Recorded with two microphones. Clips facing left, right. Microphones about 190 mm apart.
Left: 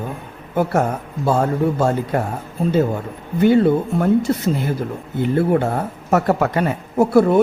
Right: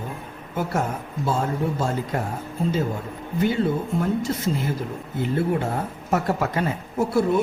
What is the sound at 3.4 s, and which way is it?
Speech, 65° left (ahead or behind).